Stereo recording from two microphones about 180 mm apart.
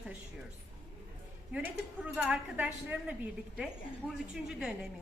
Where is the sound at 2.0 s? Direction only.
5° right (ahead or behind).